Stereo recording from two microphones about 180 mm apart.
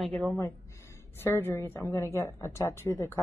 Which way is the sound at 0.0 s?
5° left (ahead or behind).